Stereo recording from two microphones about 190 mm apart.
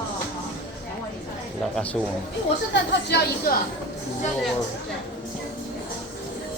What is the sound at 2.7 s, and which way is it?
Speech, 60° left (ahead or behind).